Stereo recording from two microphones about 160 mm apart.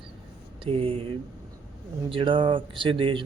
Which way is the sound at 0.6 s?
35° right (ahead or behind).